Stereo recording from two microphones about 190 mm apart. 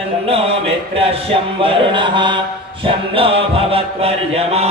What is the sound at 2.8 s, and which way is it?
Mantra, 30° right (ahead or behind).